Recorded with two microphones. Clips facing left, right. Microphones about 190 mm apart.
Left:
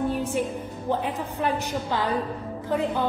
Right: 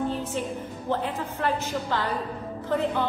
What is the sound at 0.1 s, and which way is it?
A woman's voice, 10° left (ahead or behind).